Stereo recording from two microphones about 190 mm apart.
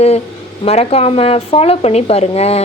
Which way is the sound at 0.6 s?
30° left (ahead or behind).